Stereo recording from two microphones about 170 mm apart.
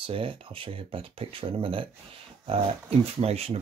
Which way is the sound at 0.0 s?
30° right (ahead or behind).